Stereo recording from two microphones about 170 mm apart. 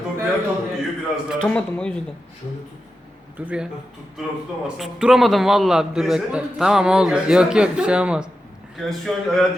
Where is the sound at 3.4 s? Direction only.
10° right (ahead or behind).